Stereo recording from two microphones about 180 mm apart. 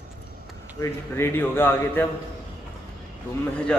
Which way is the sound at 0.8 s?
15° left (ahead or behind).